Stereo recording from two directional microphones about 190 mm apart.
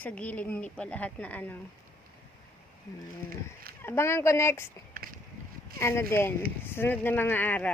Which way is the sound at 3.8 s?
15° left (ahead or behind).